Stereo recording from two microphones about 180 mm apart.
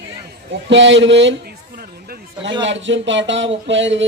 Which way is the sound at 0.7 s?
90° right.